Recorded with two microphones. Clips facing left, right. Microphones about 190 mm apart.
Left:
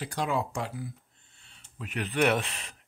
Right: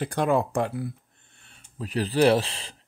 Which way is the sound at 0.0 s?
55° right (ahead or behind).